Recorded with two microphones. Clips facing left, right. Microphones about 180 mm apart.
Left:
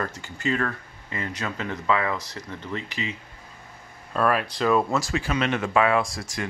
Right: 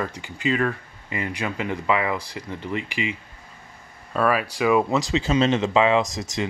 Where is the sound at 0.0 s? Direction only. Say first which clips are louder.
Right 2 dB; 15° right (ahead or behind).